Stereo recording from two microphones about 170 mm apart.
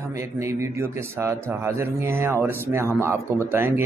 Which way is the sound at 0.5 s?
15° right (ahead or behind).